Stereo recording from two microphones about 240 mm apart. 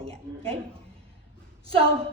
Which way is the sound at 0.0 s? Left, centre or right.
Right.